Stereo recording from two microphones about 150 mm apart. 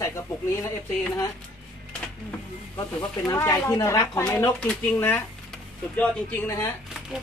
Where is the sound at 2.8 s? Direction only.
25° left (ahead or behind).